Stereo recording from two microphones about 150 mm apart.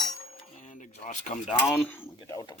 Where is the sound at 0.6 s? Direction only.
60° left (ahead or behind).